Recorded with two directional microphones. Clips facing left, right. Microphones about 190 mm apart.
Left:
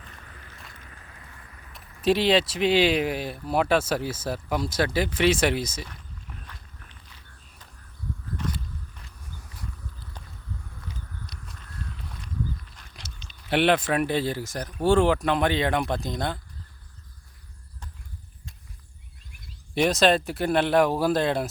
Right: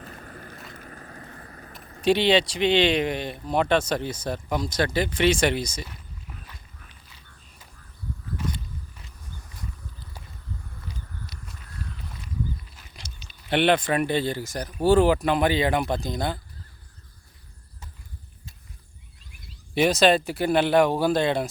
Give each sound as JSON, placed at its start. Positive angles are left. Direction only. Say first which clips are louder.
{"t": 0.0, "sound": "walk", "louder": "right 8 dB", "side_deg": -45}
{"t": 0.7, "sound": "a sound", "louder": "right 8 dB", "side_deg": -45}
{"t": 2.0, "sound": "speech", "louder": "right 1 dB", "side_deg": 0}
{"t": 5.9, "sound": "walk", "louder": "right 1 dB", "side_deg": -5}
{"t": 8.4, "sound": "clip-clop", "louder": "right 1 dB", "side_deg": 0}
{"t": 12.7, "sound": "a sound", "louder": "even", "side_deg": -5}
{"t": 13.5, "sound": "speech", "louder": "right 1 dB", "side_deg": 0}
{"t": 19.7, "sound": "speech", "louder": "right 1 dB", "side_deg": 0}